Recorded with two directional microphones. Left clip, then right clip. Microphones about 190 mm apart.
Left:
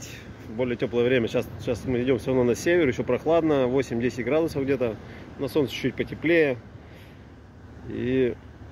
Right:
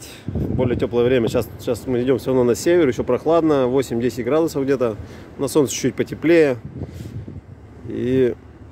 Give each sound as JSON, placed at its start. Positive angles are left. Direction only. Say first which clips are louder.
{"t": 0.6, "sound": "speech", "louder": "right 5 dB", "side_deg": -20}
{"t": 7.9, "sound": "speech", "louder": "right 6 dB", "side_deg": -25}